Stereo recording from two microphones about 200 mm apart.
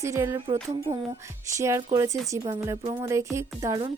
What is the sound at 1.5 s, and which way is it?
Speech, 15° right (ahead or behind).